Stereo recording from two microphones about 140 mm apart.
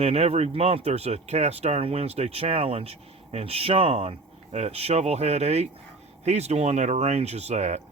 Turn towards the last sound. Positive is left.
turn(degrees=-55)  # may be behind; listen again after turning